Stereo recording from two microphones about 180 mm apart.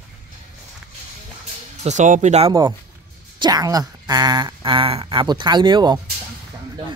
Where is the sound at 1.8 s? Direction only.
40° right (ahead or behind).